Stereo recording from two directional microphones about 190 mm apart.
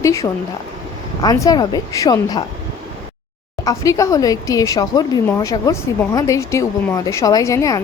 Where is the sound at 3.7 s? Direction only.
15° left (ahead or behind).